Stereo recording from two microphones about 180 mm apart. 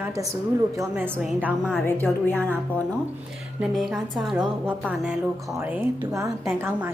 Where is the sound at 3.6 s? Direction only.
Centre (ahead or behind).